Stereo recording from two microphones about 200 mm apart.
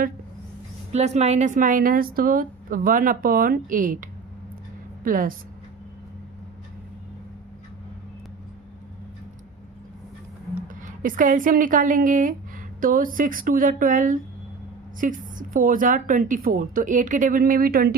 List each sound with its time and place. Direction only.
0.9 s a woman's voice: 35° right (ahead or behind)
11.0 s a woman's voice: 40° right (ahead or behind)